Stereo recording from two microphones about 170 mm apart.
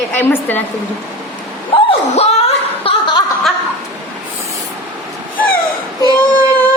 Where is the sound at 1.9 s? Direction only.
35° left (ahead or behind).